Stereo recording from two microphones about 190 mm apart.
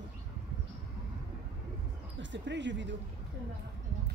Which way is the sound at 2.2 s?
70° right (ahead or behind).